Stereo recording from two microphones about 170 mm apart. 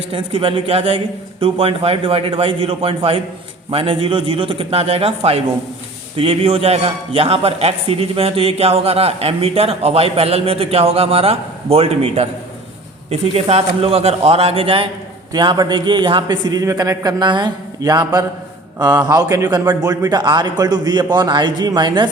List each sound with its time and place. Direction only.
0.1 s a man's voice: 35° right (ahead or behind)